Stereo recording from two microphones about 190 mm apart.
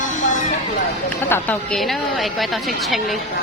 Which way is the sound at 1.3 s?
5° left (ahead or behind).